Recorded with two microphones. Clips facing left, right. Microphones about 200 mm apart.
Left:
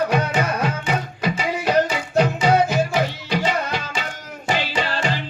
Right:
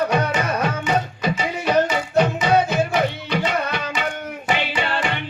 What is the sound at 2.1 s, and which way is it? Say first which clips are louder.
Music: left 1 dB; 60° right (ahead or behind).